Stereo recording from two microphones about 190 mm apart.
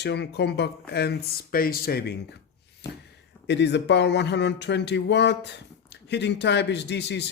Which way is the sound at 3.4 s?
65° left (ahead or behind).